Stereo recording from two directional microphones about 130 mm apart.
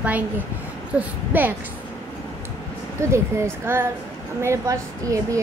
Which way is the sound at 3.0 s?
20° right (ahead or behind).